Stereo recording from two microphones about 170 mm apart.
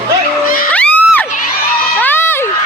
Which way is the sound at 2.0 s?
10° left (ahead or behind).